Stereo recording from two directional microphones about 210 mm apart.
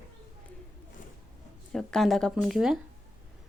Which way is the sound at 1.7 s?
Centre (ahead or behind).